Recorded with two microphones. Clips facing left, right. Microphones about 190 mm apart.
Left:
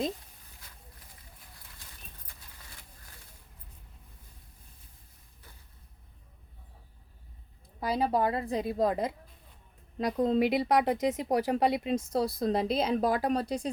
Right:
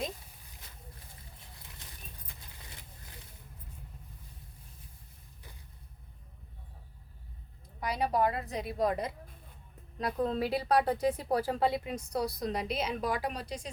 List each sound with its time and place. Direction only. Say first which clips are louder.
7.8 s a woman's voice: left 2 dB; 30° left (ahead or behind)